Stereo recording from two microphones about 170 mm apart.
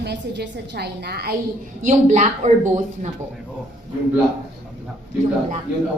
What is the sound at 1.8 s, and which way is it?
Speech, 45° right (ahead or behind).